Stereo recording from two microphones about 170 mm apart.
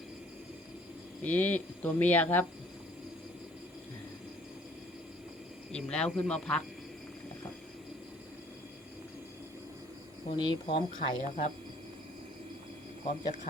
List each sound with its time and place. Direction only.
1.2 s speech: 10° left (ahead or behind)
5.7 s speech: 5° left (ahead or behind)
10.3 s speech: 25° left (ahead or behind)